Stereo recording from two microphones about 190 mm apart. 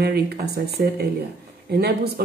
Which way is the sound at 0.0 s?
60° right (ahead or behind).